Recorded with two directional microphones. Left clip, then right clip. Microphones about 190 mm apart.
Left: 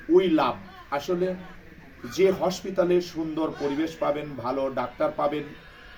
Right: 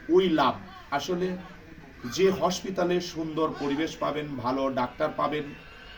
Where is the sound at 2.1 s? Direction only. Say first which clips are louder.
Left 2 dB; 15° left (ahead or behind).